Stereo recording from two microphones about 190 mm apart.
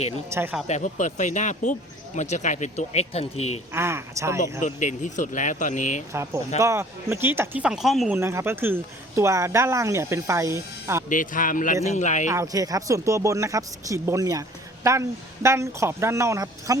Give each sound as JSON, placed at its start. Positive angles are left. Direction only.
{"t": 0.3, "sound": "speech", "side_deg": -10}
{"t": 0.7, "sound": "speech", "side_deg": 40}
{"t": 3.7, "sound": "speech", "side_deg": -15}
{"t": 4.6, "sound": "speech", "side_deg": 40}
{"t": 6.6, "sound": "speech", "side_deg": -15}
{"t": 8.1, "sound": "speech", "side_deg": -15}
{"t": 11.1, "sound": "speech", "side_deg": 45}
{"t": 12.3, "sound": "speech", "side_deg": -15}
{"t": 15.4, "sound": "speech", "side_deg": -15}